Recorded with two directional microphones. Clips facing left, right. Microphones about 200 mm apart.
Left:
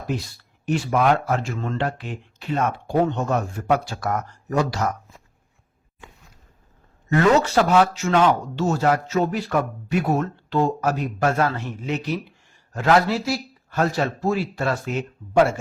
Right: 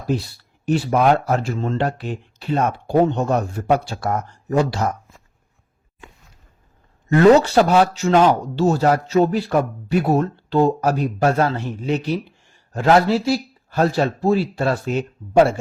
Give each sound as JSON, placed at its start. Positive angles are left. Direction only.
{"t": 0.1, "sound": "speech", "side_deg": -35}
{"t": 7.3, "sound": "speech", "side_deg": -35}